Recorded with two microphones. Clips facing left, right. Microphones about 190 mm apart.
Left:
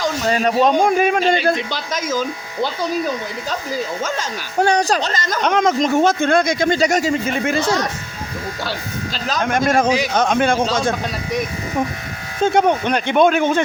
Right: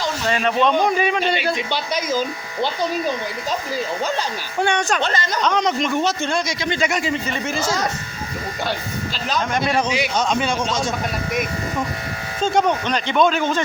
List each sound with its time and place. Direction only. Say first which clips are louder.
0.0 s speech: left 3 dB; 40° left (ahead or behind)
4.0 s speech: even; 40° left (ahead or behind)
9.4 s speech: left 5 dB; 50° left (ahead or behind)
10.2 s speech: left 5 dB; 55° left (ahead or behind)
12.4 s speech: left 3 dB; 55° left (ahead or behind)